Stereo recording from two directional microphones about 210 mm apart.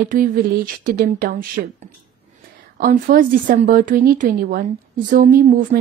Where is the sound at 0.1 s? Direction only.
40° right (ahead or behind).